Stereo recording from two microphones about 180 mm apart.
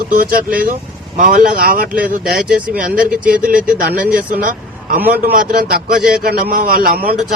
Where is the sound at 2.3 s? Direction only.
5° right (ahead or behind).